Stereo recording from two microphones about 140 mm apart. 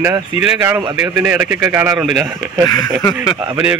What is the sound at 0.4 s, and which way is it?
Speech, 15° right (ahead or behind).